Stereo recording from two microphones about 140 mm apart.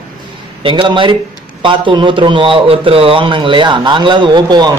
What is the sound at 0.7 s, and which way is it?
A man's voice, 35° right (ahead or behind).